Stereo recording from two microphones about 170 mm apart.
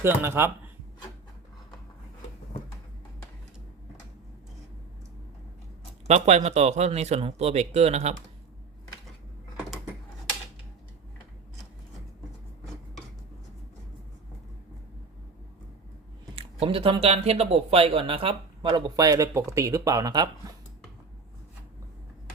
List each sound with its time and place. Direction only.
0.0 s speech: 15° right (ahead or behind)
6.1 s speech: 40° right (ahead or behind)
16.3 s speech: 35° right (ahead or behind)